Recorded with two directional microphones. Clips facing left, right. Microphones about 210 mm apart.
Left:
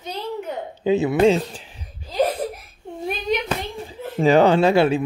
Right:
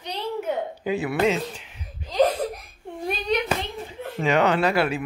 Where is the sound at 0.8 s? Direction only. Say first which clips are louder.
Left 8 dB; 25° left (ahead or behind).